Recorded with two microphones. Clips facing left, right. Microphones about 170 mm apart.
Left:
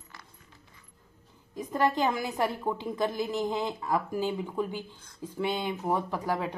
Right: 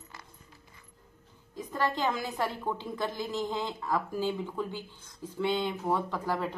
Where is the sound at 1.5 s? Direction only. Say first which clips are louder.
Left 4 dB; 20° left (ahead or behind).